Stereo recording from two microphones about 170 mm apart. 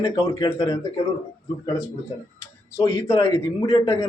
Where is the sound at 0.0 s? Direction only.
20° left (ahead or behind).